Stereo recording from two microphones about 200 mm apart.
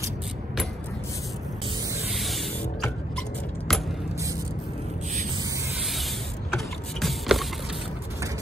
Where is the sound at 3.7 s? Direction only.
Centre (ahead or behind).